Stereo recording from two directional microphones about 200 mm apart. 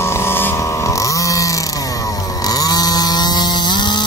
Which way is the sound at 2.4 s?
20° left (ahead or behind).